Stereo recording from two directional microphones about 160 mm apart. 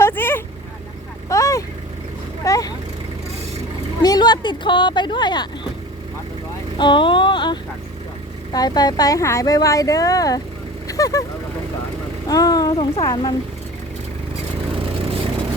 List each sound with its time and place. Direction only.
0.0 s vehicle: 15° left (ahead or behind)
4.0 s speech: 25° left (ahead or behind)
6.7 s speech: 30° left (ahead or behind)
10.8 s vehicle: 20° left (ahead or behind)
12.3 s speech: 25° left (ahead or behind)